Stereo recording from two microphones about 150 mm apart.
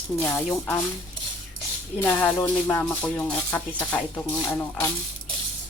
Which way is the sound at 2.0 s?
10° left (ahead or behind).